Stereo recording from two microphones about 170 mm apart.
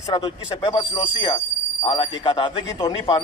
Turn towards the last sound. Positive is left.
turn(degrees=25)  # may be behind; listen again after turning